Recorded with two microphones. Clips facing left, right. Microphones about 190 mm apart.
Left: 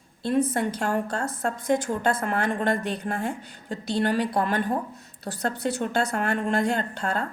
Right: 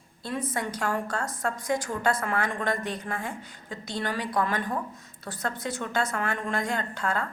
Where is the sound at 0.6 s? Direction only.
30° left (ahead or behind).